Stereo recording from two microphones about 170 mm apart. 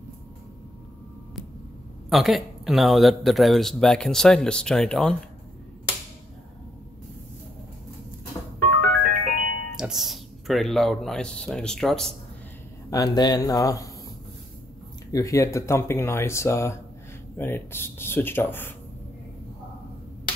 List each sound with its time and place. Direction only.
2.0 s speech: centre (ahead or behind)
9.0 s music: 60° right (ahead or behind)
9.8 s speech: 5° right (ahead or behind)
12.9 s speech: 25° left (ahead or behind)
15.0 s speech: 20° left (ahead or behind)